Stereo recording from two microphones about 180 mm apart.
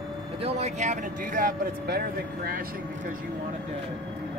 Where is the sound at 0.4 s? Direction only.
35° right (ahead or behind); by 2.6 s 55° right (ahead or behind).